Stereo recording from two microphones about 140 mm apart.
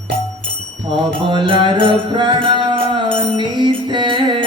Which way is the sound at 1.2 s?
35° right (ahead or behind).